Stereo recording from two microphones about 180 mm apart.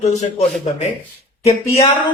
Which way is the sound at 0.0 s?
40° left (ahead or behind).